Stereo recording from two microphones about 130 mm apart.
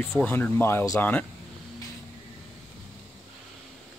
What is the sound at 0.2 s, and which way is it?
Speech, 15° left (ahead or behind).